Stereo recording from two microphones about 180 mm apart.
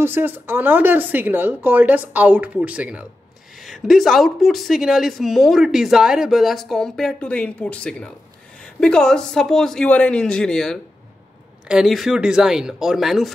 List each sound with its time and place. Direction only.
0.0 s a woman's voice: 10° right (ahead or behind)